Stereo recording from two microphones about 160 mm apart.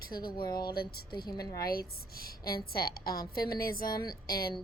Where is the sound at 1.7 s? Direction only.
70° left (ahead or behind).